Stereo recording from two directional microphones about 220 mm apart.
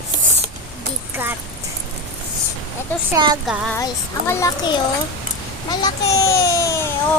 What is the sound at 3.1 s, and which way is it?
Speech, 15° right (ahead or behind).